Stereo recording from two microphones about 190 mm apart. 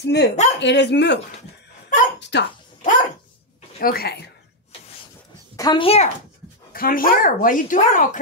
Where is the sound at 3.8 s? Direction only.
50° left (ahead or behind).